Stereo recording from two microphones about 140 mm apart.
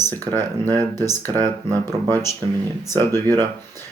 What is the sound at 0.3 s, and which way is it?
Speech, 30° right (ahead or behind).